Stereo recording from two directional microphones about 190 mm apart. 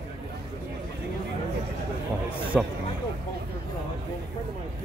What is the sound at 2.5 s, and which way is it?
Speech, centre (ahead or behind).